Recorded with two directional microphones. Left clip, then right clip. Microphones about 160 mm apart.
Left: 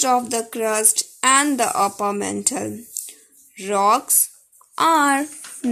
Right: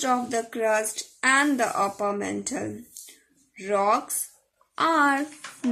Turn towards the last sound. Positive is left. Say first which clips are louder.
# left 5 dB
turn(degrees=45)  # may be behind; listen again after turning